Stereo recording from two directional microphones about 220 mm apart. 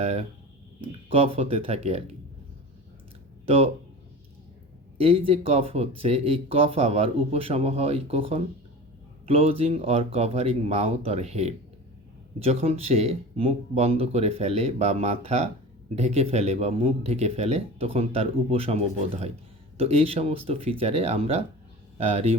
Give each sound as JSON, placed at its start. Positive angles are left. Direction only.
{"t": 0.0, "sound": "speech", "side_deg": -25}
{"t": 3.4, "sound": "speech", "side_deg": -25}
{"t": 4.9, "sound": "speech", "side_deg": -25}